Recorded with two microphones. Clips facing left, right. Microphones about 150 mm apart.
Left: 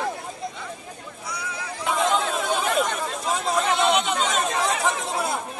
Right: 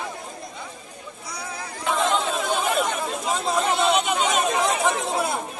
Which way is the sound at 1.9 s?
5° left (ahead or behind).